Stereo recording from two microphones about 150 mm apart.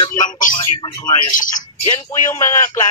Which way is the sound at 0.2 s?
60° left (ahead or behind).